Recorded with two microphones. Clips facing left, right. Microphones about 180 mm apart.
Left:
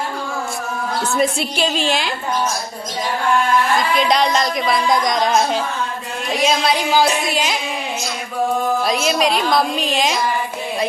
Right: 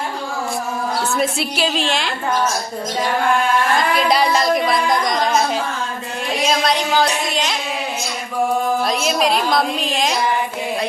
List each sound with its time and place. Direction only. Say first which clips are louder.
1.1 s speech: left 1 dB; 5° right (ahead or behind)
3.8 s speech: even; 5° right (ahead or behind)
8.8 s speech: left 1 dB; centre (ahead or behind)